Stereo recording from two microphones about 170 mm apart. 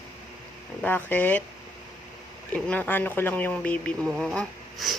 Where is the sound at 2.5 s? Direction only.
10° left (ahead or behind).